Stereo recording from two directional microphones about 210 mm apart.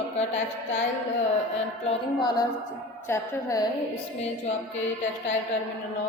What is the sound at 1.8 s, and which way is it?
A woman's voice, 20° left (ahead or behind).